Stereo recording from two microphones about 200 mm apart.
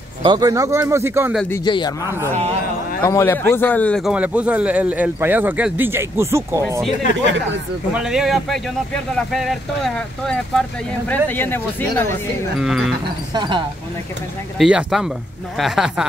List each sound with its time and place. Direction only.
0.2 s a man's voice: 20° right (ahead or behind)
1.5 s speech: 20° left (ahead or behind)
3.0 s a man's voice: 10° left (ahead or behind); by 6.8 s 15° right (ahead or behind)
7.9 s speech: 5° right (ahead or behind)
12.5 s speech: centre (ahead or behind)
13.3 s speech: 25° right (ahead or behind)
14.6 s speech: 5° right (ahead or behind)